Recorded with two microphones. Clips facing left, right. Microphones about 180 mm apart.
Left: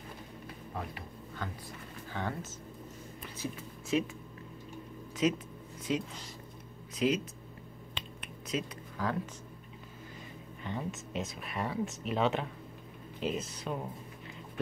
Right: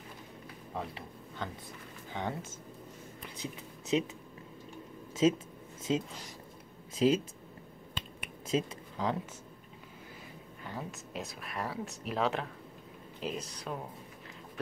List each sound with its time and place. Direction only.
0.7 s speech: 25° right (ahead or behind)
3.3 s speech: 20° right (ahead or behind)
5.2 s speech: 30° right (ahead or behind)
8.5 s speech: 25° right (ahead or behind)
10.6 s speech: centre (ahead or behind)